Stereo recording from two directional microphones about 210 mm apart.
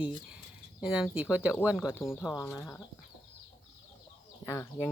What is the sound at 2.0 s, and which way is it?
Speech, 10° left (ahead or behind).